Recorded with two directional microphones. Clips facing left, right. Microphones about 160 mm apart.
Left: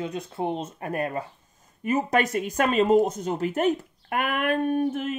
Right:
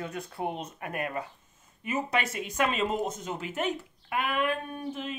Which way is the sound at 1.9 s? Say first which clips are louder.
Left 7 dB; 45° left (ahead or behind).